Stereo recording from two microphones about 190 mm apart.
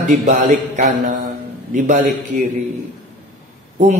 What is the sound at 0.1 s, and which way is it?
A man's voice, 40° right (ahead or behind).